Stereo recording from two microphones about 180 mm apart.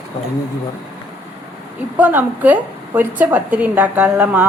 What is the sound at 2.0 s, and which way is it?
A woman's voice, 10° right (ahead or behind).